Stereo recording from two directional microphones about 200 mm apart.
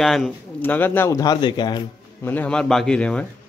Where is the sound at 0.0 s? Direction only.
Centre (ahead or behind); by 1.9 s 25° left (ahead or behind).